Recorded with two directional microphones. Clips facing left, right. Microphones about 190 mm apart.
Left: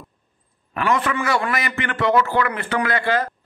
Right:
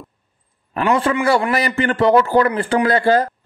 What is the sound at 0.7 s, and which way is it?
A man's voice, 30° right (ahead or behind).